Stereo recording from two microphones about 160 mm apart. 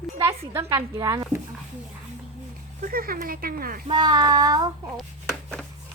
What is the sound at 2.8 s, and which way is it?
Speech, 65° right (ahead or behind).